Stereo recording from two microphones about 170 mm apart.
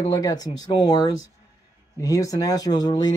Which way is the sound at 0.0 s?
20° left (ahead or behind).